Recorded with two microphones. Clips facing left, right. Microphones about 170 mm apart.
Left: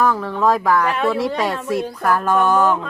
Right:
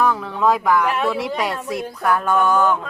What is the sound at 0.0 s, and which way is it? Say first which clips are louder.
Speech: left 1 dB; centre (ahead or behind).